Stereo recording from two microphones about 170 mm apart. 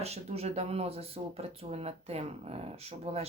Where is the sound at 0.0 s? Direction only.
40° right (ahead or behind).